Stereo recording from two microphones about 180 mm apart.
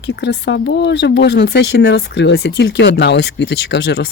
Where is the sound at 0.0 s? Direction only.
70° left (ahead or behind).